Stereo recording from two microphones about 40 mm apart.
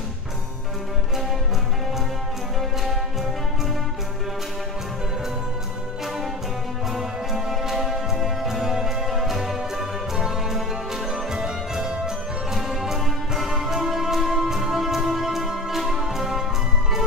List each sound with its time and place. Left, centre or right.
6.9 s music: centre
12.5 s music: centre